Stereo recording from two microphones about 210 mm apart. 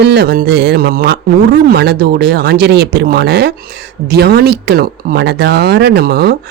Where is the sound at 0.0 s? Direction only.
50° right (ahead or behind).